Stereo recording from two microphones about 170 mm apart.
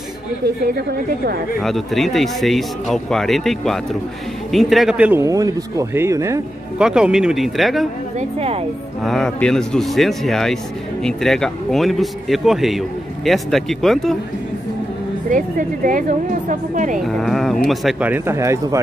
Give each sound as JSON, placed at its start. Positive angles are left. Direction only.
{"t": 0.7, "sound": "a woman's voice", "side_deg": -65}
{"t": 1.6, "sound": "speech", "side_deg": 0}
{"t": 5.2, "sound": "speech", "side_deg": -20}
{"t": 6.8, "sound": "speech", "side_deg": -5}
{"t": 8.2, "sound": "speech", "side_deg": -35}
{"t": 9.0, "sound": "speech", "side_deg": 0}
{"t": 15.2, "sound": "speech", "side_deg": -50}
{"t": 17.0, "sound": "speech", "side_deg": 0}